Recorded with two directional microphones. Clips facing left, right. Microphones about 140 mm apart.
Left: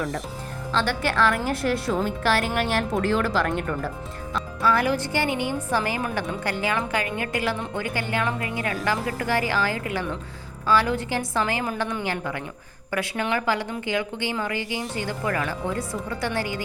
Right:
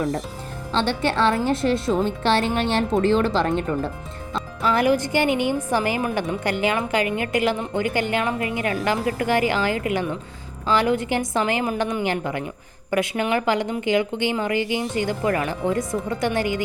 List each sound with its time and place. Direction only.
0.7 s a woman's voice: 25° right (ahead or behind)